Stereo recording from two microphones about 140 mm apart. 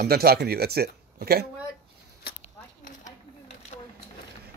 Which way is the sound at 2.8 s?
60° left (ahead or behind).